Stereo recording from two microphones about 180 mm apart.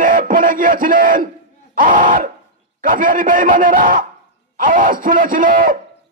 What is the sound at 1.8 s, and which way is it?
A man's voice, 50° right (ahead or behind).